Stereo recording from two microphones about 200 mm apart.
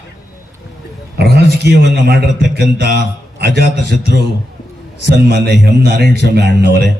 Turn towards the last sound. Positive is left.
turn(degrees=-55)  # may be behind; listen again after turning